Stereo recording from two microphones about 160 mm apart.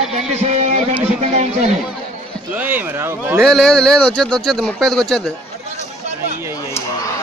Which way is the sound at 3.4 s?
Centre (ahead or behind).